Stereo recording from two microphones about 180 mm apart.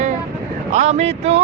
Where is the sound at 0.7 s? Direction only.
40° right (ahead or behind).